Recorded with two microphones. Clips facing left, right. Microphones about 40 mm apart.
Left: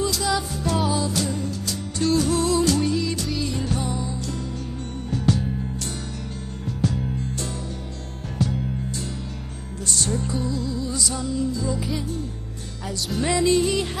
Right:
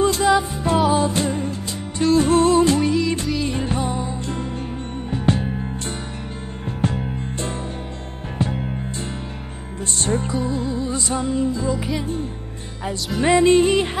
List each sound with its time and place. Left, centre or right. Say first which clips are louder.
0.0 s music: right 7 dB; right
2.8 s music: right 4 dB; centre
3.4 s music: right 3 dB; right
6.8 s music: right 1 dB; right
9.9 s music: right 4 dB; right